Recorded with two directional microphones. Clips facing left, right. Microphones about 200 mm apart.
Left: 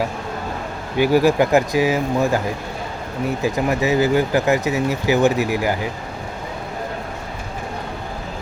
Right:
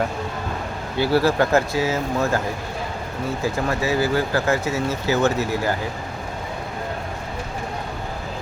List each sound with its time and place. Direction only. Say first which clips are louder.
0.9 s speech: left 3 dB; 15° left (ahead or behind)